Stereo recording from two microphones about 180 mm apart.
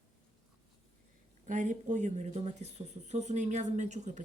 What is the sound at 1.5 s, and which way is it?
Speech, 45° right (ahead or behind).